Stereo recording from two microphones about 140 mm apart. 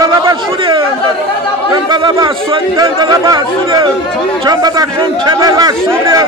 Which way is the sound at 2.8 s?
30° right (ahead or behind).